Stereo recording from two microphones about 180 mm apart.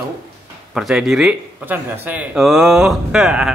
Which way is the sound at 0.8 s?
Centre (ahead or behind).